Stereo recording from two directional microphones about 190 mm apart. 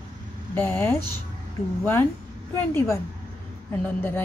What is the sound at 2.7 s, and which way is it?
Speech, 15° left (ahead or behind).